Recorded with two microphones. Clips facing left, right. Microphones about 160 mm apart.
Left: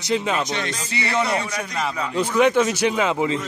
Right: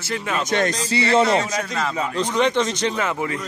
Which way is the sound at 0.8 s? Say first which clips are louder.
Right 5 dB; 30° right (ahead or behind).